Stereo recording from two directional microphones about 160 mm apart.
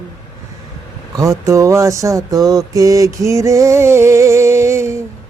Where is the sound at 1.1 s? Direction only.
20° right (ahead or behind).